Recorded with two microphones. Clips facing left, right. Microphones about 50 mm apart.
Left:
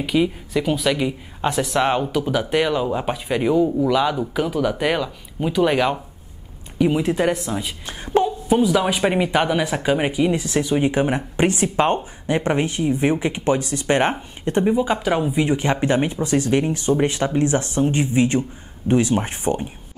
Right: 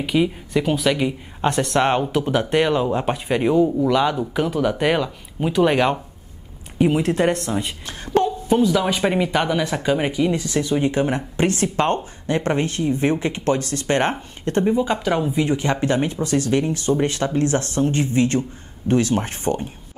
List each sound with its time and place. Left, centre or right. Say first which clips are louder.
0.0 s speech: even; centre